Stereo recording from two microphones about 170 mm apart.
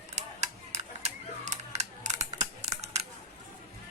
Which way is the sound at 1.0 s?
40° right (ahead or behind).